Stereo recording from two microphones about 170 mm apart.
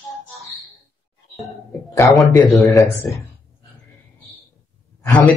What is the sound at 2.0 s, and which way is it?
Speech, centre (ahead or behind).